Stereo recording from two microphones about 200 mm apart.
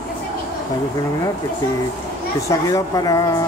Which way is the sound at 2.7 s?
15° left (ahead or behind).